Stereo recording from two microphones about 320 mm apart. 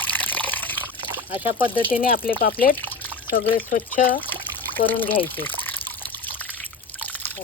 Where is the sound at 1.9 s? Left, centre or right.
Left.